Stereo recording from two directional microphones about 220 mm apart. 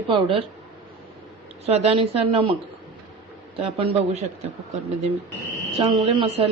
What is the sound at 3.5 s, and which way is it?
Speech, 25° right (ahead or behind).